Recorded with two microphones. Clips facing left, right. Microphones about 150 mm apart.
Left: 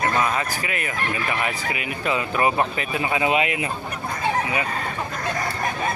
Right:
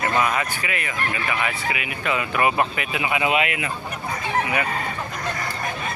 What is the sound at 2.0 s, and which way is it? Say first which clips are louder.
Speech: even; 35° left (ahead or behind).